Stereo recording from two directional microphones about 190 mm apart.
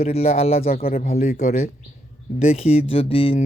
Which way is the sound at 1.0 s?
35° left (ahead or behind).